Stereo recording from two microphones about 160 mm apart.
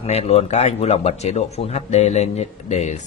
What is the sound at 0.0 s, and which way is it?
A man's voice, 40° left (ahead or behind).